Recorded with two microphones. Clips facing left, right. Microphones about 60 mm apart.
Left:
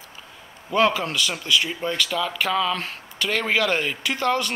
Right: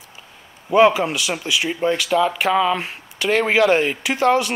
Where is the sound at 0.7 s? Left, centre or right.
Centre.